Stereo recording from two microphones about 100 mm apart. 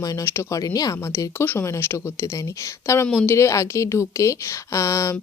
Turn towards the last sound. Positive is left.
turn(degrees=30)  # may be behind; listen again after turning